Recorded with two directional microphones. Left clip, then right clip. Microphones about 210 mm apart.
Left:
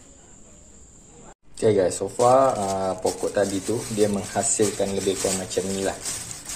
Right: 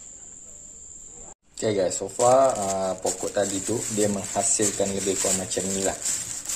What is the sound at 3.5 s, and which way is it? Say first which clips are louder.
Speech: left 1 dB; 25° right (ahead or behind).